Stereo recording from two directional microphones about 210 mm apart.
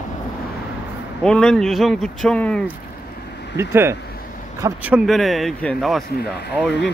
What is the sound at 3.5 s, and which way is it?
Speech, 10° right (ahead or behind).